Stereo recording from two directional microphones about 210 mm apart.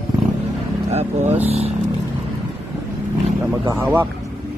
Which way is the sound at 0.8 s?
30° right (ahead or behind).